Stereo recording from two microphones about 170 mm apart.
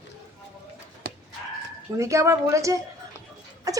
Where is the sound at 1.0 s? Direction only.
60° right (ahead or behind).